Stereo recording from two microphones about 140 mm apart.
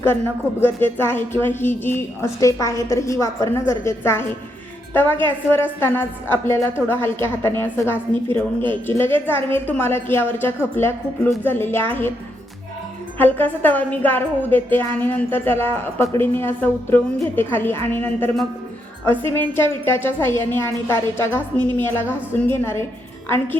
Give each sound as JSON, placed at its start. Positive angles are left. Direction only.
{"t": 0.6, "sound": "a woman's voice", "side_deg": 15}
{"t": 13.1, "sound": "a woman's voice", "side_deg": 15}